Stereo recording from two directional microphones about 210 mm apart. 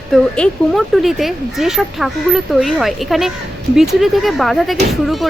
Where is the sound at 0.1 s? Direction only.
5° left (ahead or behind).